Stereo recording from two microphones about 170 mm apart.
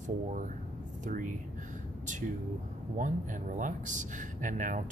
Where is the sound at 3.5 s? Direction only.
45° right (ahead or behind).